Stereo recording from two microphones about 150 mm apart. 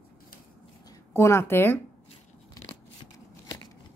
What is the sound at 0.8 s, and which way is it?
Speech, 15° left (ahead or behind).